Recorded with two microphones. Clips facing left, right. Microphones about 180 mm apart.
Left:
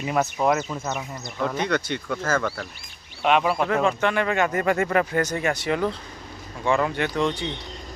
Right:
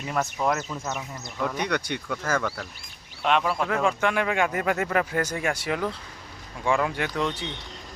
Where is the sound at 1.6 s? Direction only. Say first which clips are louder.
Left 3 dB; 15° right (ahead or behind).